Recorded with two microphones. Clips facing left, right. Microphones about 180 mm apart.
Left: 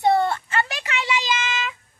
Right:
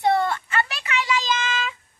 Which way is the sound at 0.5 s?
35° left (ahead or behind).